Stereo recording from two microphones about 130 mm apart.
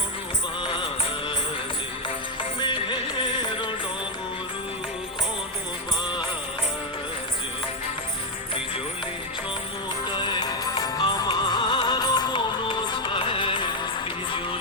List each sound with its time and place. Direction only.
0.6 s music: 40° left (ahead or behind)
2.6 s music: 40° left (ahead or behind)
10.1 s music: 35° left (ahead or behind)